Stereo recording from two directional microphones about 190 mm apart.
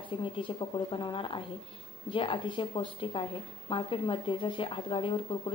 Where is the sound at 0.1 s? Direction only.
25° left (ahead or behind).